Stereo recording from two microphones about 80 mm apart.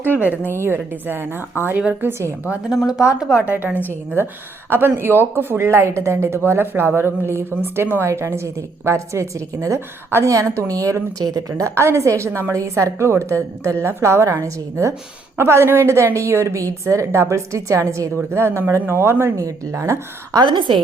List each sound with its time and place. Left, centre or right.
0.0 s a woman's voice: right
3.2 s speech: centre
3.4 s a woman's voice: centre
4.7 s a woman's voice: right
20.4 s a woman's voice: right